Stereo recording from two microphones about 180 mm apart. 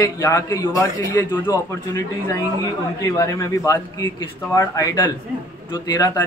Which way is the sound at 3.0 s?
20° left (ahead or behind).